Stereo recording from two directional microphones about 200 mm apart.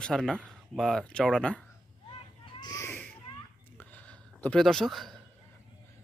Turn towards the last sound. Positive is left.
turn(degrees=0)  # may be behind; listen again after turning